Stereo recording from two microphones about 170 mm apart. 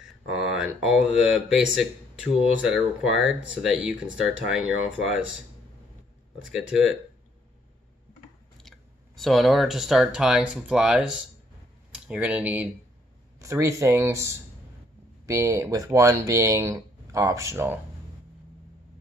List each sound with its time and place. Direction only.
0.4 s speech: 5° right (ahead or behind)
8.5 s speech: centre (ahead or behind); by 17.7 s 15° right (ahead or behind)